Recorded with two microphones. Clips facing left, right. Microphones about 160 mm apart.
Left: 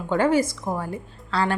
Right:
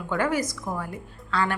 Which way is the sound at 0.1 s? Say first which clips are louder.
Left 5 dB; 30° left (ahead or behind).